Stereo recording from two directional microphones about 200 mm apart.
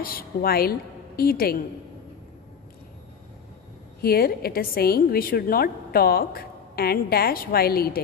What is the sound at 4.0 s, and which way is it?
A woman's voice, 50° left (ahead or behind).